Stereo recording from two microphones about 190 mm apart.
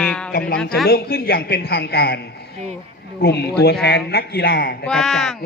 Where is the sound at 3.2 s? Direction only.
60° left (ahead or behind).